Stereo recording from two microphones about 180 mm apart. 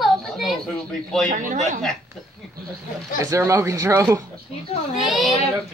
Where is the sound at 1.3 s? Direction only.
45° right (ahead or behind).